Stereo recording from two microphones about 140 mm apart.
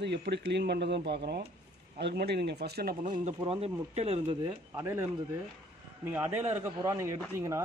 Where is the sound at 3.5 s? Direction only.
45° right (ahead or behind).